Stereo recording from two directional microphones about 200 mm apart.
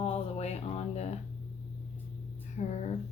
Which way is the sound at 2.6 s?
40° left (ahead or behind).